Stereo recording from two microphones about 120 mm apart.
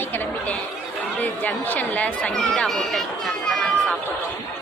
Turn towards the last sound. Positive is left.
turn(degrees=5)  # may be behind; listen again after turning